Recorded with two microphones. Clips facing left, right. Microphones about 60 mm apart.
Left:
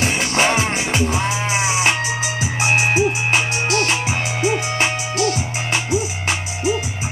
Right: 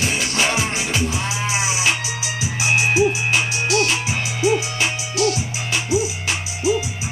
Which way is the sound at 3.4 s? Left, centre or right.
Left.